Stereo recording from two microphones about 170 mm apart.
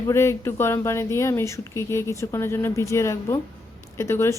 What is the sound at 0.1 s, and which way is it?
Speech, 15° left (ahead or behind).